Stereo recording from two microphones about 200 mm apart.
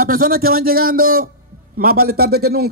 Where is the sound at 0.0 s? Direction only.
45° right (ahead or behind).